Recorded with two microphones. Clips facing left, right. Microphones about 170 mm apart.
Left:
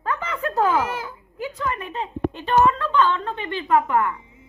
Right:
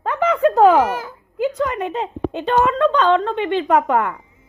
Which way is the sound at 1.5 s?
90° right.